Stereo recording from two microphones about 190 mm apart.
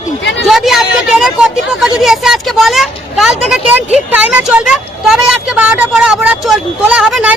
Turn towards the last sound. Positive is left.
turn(degrees=-5)  # may be behind; listen again after turning